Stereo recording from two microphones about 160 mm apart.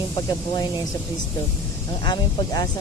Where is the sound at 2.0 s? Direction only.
25° left (ahead or behind).